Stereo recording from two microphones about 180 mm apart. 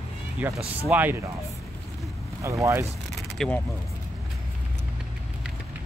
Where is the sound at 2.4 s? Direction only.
15° right (ahead or behind).